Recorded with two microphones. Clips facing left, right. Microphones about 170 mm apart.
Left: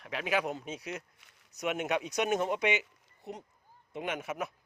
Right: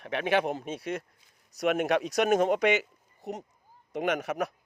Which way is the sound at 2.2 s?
75° right (ahead or behind).